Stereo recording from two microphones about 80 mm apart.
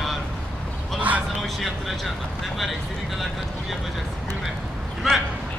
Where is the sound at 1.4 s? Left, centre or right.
Centre.